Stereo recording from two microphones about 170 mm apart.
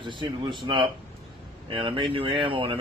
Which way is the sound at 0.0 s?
30° right (ahead or behind).